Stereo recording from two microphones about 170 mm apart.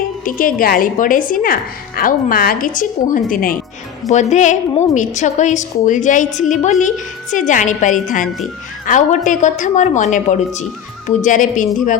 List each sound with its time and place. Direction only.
0.3 s a woman's voice: 55° left (ahead or behind)